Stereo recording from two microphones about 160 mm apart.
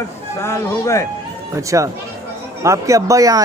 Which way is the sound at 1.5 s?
20° right (ahead or behind).